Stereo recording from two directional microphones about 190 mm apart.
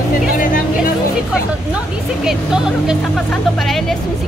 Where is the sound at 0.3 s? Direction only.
45° left (ahead or behind).